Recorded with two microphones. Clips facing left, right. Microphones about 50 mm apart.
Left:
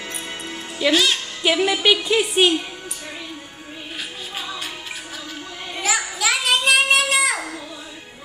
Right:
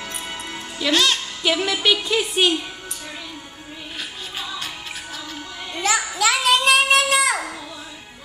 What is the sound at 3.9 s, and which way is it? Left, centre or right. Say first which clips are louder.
Music: left 1 dB; centre.